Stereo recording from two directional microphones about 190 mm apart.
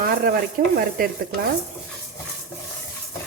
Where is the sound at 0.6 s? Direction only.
55° right (ahead or behind).